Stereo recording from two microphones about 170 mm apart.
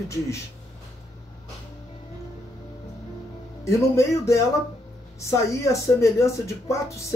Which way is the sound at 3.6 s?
15° left (ahead or behind).